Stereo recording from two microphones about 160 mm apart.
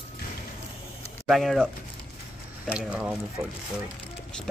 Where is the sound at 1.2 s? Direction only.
Centre (ahead or behind).